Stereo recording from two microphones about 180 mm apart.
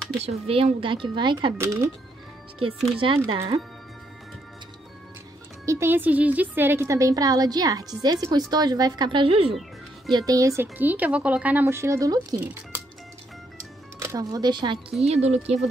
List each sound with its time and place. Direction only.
0.2 s a woman's voice: 35° right (ahead or behind); by 1.9 s 15° right (ahead or behind)
3.2 s speech: 15° right (ahead or behind)
5.7 s a woman's voice: 15° right (ahead or behind); by 9.6 s 30° right (ahead or behind)
10.1 s speech: 20° right (ahead or behind)
13.9 s a woman's voice: 20° right (ahead or behind); by 15.6 s 35° right (ahead or behind)